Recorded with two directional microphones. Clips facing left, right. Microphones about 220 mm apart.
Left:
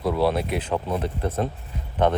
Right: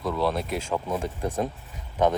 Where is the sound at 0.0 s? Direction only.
30° left (ahead or behind).